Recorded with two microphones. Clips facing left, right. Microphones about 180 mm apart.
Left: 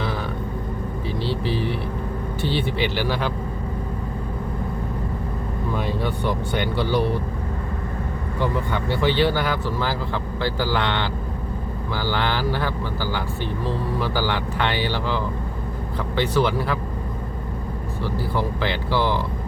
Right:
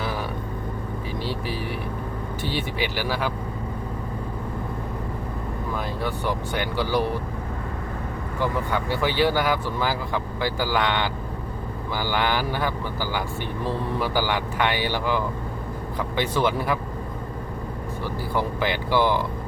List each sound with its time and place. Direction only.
1.2 s speech: 10° right (ahead or behind)
6.0 s speech: 5° right (ahead or behind)
8.7 s speech: 10° right (ahead or behind)
18.0 s speech: 15° right (ahead or behind)